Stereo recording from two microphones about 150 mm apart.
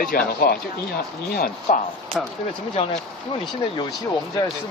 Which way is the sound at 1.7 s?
60° left (ahead or behind).